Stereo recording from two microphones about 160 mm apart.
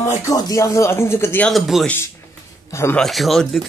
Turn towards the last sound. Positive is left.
turn(degrees=0)  # may be behind; listen again after turning